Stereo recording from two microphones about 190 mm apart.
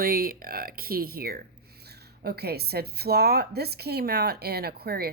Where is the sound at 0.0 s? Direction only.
50° right (ahead or behind).